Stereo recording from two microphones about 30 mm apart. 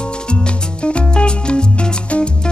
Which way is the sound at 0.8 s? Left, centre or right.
Left.